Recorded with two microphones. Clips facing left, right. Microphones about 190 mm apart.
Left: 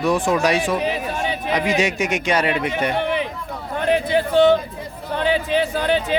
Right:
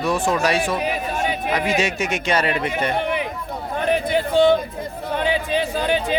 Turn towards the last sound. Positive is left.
turn(degrees=-15)  # may be behind; listen again after turning